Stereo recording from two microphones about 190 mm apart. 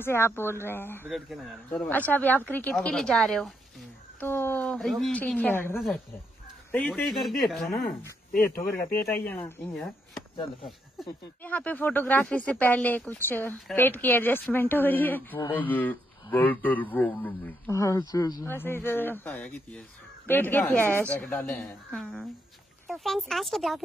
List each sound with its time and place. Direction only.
0.0 s a man's voice: 10° left (ahead or behind)
1.0 s a man's voice: centre (ahead or behind)
8.3 s speech: 50° left (ahead or behind)
8.6 s a man's voice: 10° left (ahead or behind)
11.0 s a man's voice: 10° left (ahead or behind)